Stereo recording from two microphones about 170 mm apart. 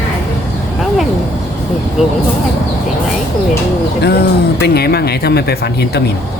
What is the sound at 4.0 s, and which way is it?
Speech, 70° left (ahead or behind).